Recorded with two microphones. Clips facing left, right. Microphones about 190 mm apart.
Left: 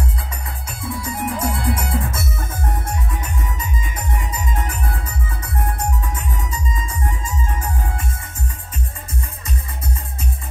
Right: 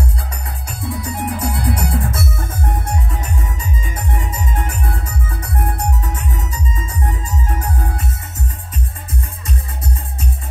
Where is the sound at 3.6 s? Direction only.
30° right (ahead or behind).